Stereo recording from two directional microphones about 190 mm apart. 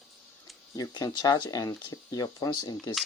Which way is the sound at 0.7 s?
20° left (ahead or behind).